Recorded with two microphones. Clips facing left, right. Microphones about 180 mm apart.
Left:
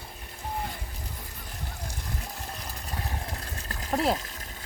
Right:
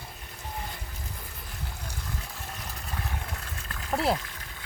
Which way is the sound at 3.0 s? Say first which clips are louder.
Left 2 dB; 35° left (ahead or behind).